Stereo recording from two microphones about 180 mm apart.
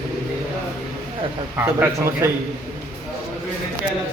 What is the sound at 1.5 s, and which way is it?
Speech, 15° right (ahead or behind).